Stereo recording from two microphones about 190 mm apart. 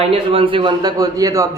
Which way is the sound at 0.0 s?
25° right (ahead or behind).